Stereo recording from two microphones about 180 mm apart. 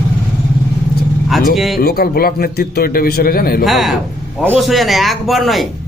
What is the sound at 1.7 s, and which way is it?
A man's voice, 55° left (ahead or behind).